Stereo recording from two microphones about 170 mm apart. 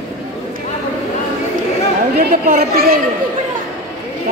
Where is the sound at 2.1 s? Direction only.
60° right (ahead or behind).